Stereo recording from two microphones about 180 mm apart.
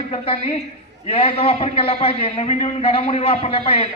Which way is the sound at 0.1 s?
30° left (ahead or behind).